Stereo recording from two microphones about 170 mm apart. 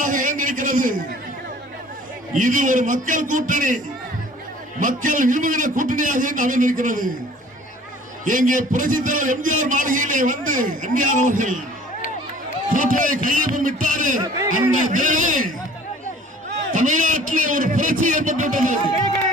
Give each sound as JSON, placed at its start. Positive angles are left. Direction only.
{"t": 0.0, "sound": "a sound", "side_deg": -50}
{"t": 2.3, "sound": "a man's voice", "side_deg": -50}
{"t": 4.8, "sound": "a man's voice", "side_deg": -50}
{"t": 8.2, "sound": "a man's voice", "side_deg": -50}
{"t": 12.7, "sound": "a man's voice", "side_deg": -50}
{"t": 16.7, "sound": "a man's voice", "side_deg": -50}